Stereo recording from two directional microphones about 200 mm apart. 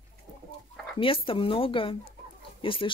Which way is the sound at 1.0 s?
25° left (ahead or behind).